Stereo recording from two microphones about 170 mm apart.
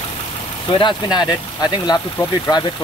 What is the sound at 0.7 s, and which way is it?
Speech, 25° left (ahead or behind).